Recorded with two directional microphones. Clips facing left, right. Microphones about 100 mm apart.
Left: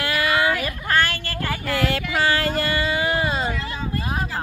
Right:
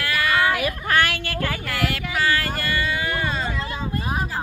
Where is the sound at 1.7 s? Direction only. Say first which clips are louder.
Left 3 dB; 30° left (ahead or behind).